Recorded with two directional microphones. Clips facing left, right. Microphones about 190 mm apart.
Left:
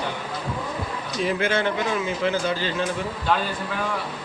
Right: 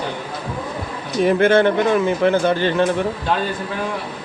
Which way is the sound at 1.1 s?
55° right (ahead or behind).